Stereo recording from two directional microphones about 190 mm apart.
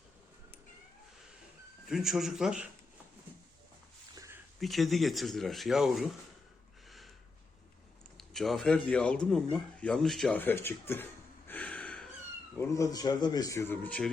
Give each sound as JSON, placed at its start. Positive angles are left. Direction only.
{"t": 1.9, "sound": "speech", "side_deg": 0}
{"t": 4.1, "sound": "a sound", "side_deg": -15}
{"t": 4.6, "sound": "speech", "side_deg": 0}
{"t": 8.2, "sound": "a man's voice", "side_deg": 0}